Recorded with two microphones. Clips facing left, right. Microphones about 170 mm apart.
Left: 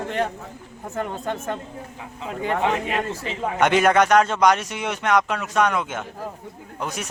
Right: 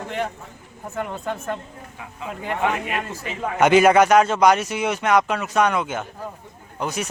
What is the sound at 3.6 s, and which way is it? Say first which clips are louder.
Speech: right 3 dB; 5° right (ahead or behind).